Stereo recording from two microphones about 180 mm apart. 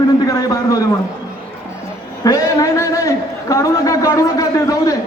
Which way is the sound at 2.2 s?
20° left (ahead or behind).